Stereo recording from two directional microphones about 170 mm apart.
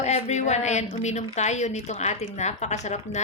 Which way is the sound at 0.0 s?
40° left (ahead or behind).